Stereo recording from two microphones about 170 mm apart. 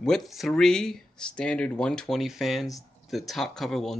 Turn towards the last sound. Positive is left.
turn(degrees=0)  # may be behind; listen again after turning